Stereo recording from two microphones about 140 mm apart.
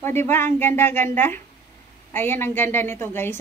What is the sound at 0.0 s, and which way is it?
A woman's voice, 15° left (ahead or behind).